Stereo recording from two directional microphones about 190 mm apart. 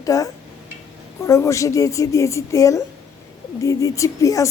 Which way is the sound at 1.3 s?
15° left (ahead or behind).